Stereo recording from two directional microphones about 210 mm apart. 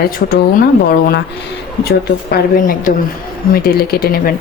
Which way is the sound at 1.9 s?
50° left (ahead or behind).